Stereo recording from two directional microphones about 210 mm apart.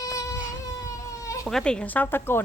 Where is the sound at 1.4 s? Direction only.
5° left (ahead or behind).